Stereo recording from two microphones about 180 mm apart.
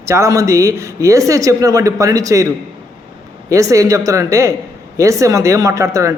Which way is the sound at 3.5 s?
15° right (ahead or behind).